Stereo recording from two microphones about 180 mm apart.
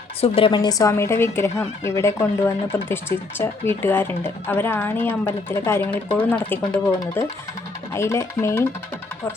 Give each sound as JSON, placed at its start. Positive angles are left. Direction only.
{"t": 0.2, "sound": "speech", "side_deg": 30}